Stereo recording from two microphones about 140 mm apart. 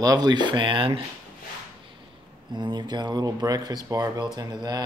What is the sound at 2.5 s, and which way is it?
Speech, 30° right (ahead or behind).